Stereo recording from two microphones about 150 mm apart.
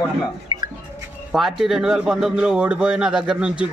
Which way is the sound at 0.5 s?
30° right (ahead or behind).